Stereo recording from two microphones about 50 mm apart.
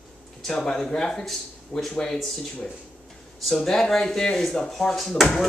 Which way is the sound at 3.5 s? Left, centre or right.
Centre.